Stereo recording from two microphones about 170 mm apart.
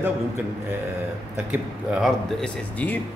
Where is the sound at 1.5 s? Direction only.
Centre (ahead or behind).